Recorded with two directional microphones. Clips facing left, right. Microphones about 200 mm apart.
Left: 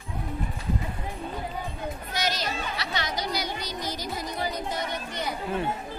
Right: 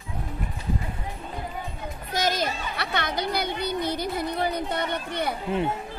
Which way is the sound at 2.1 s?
50° right (ahead or behind).